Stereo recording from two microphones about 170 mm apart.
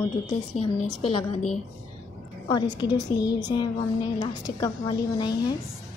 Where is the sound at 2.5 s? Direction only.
25° left (ahead or behind).